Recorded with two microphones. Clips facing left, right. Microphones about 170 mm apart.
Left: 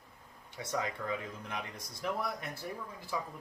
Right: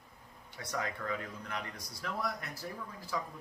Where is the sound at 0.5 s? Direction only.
20° left (ahead or behind).